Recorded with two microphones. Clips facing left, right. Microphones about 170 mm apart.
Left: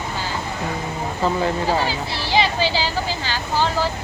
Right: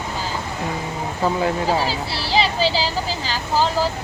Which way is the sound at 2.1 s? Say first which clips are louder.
Even; 35° right (ahead or behind).